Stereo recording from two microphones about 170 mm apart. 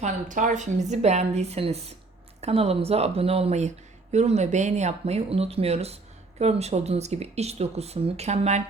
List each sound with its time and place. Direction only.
0.0 s speech: 50° right (ahead or behind)